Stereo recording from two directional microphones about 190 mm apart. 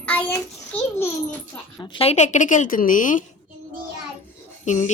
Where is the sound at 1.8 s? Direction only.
25° left (ahead or behind); by 3.2 s 45° left (ahead or behind).